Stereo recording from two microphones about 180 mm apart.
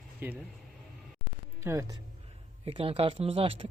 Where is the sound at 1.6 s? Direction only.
15° right (ahead or behind).